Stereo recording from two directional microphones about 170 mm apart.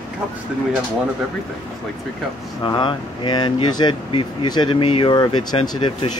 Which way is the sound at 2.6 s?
25° left (ahead or behind).